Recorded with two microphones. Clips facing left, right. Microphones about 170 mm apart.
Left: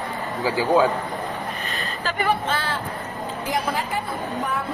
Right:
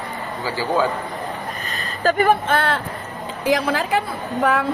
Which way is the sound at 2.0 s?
50° right (ahead or behind).